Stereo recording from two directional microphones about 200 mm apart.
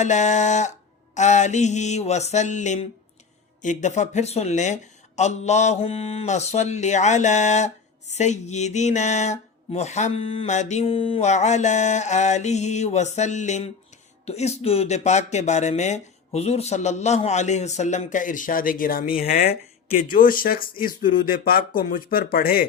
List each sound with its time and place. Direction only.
0.0 s speech: 35° left (ahead or behind)